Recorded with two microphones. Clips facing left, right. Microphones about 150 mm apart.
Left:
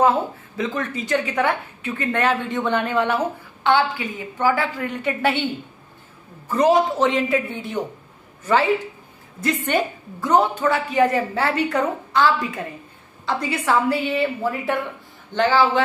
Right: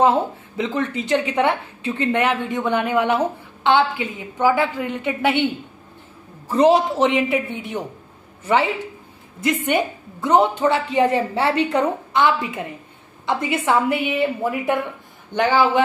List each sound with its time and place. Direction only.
0.6 s a woman's voice: 25° right (ahead or behind)
6.5 s a woman's voice: 30° right (ahead or behind)
7.0 s speech: 20° right (ahead or behind)
9.4 s a woman's voice: 15° right (ahead or behind)